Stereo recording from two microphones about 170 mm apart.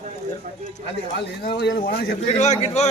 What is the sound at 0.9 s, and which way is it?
Speech, 90° left.